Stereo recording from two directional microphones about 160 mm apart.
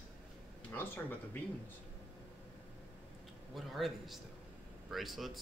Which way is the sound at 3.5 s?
Centre (ahead or behind).